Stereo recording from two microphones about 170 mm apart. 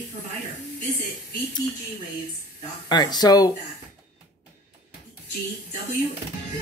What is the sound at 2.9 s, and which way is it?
Speech, 25° left (ahead or behind).